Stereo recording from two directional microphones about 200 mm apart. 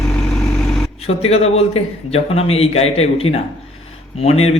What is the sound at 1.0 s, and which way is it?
A man's voice, 30° left (ahead or behind).